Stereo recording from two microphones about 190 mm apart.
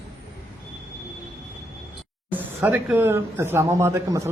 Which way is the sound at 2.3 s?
10° right (ahead or behind).